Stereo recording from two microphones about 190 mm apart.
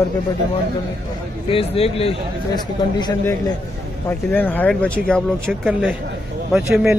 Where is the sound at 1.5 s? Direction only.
30° left (ahead or behind).